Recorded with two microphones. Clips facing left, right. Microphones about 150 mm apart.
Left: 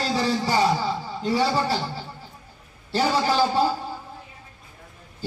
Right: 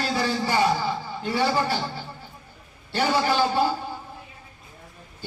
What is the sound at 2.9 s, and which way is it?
Speech, 35° left (ahead or behind).